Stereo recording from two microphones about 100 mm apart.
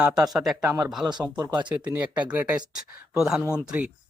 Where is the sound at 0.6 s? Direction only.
25° right (ahead or behind); by 3.9 s 10° right (ahead or behind).